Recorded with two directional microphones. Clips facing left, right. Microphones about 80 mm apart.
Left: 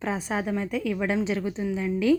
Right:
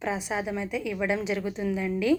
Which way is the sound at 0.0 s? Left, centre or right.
Left.